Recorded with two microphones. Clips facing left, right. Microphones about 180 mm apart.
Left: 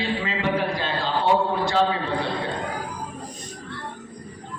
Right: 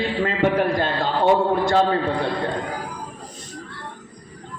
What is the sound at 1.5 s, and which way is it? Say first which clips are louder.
Speech: right 4 dB; 50° right (ahead or behind).